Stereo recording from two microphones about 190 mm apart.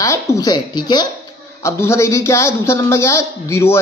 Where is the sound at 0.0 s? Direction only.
15° left (ahead or behind).